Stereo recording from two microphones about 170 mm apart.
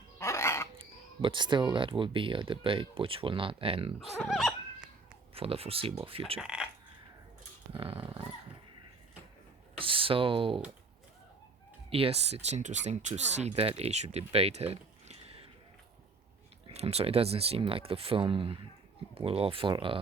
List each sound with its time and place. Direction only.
0.2 s dog: 15° left (ahead or behind)
0.8 s speech: 30° right (ahead or behind)
4.2 s neigh: centre (ahead or behind)
5.3 s speech: 35° right (ahead or behind)
6.4 s speech: 5° right (ahead or behind)
7.7 s speech: 30° right (ahead or behind)
9.7 s a sound: 30° right (ahead or behind)
11.9 s speech: 35° right (ahead or behind)
16.6 s speech: 35° right (ahead or behind)